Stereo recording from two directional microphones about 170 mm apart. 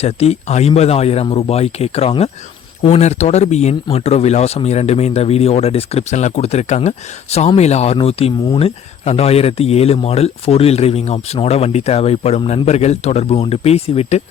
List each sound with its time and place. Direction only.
0.0 s speech: 40° left (ahead or behind)